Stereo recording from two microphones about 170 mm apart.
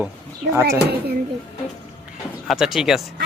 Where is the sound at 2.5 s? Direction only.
Centre (ahead or behind).